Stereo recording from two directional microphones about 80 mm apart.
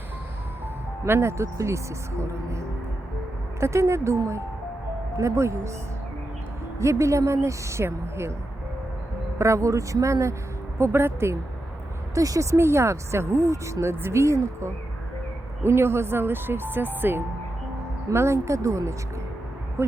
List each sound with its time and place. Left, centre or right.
1.0 s speech: right
6.7 s speech: right
9.4 s speech: right
12.1 s speech: right
19.8 s speech: right